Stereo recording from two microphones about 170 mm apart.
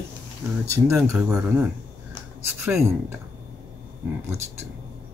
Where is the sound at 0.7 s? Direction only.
15° right (ahead or behind).